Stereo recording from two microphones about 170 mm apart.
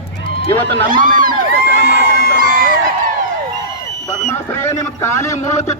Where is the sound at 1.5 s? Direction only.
80° right.